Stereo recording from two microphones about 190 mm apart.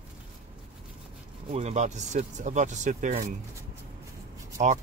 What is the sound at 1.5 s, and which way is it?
Speech, 35° right (ahead or behind).